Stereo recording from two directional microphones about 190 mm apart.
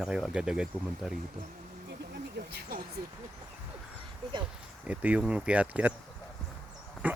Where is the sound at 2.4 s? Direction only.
55° right (ahead or behind).